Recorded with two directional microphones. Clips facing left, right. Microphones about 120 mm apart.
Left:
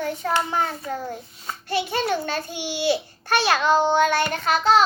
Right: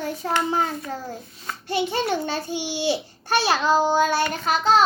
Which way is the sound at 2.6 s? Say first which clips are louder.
Left 4 dB; 15° right (ahead or behind).